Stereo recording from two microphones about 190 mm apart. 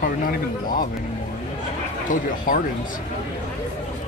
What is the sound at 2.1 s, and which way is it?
Speech, 45° left (ahead or behind).